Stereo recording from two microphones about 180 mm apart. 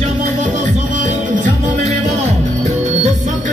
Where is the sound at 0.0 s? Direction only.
40° right (ahead or behind).